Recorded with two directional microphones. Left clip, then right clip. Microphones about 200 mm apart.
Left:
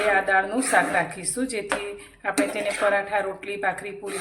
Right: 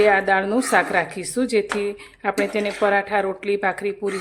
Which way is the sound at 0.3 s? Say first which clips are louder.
Right 3 dB; 50° right (ahead or behind).